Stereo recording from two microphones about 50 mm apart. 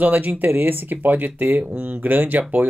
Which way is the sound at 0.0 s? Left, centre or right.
Right.